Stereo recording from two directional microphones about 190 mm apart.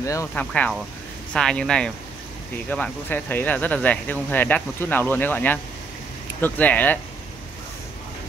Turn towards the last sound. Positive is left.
turn(degrees=10)  # may be behind; listen again after turning